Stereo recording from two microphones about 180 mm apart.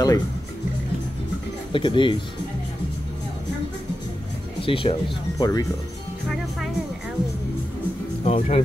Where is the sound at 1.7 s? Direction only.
25° left (ahead or behind).